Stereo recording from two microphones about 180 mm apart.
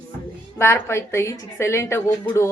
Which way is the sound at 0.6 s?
15° left (ahead or behind).